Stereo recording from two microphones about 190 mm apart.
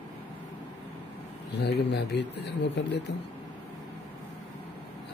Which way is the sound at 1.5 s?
60° left (ahead or behind).